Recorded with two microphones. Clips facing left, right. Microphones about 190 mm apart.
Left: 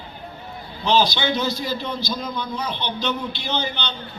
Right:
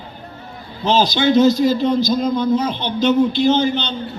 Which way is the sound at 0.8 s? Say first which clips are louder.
Right 4 dB; 45° right (ahead or behind).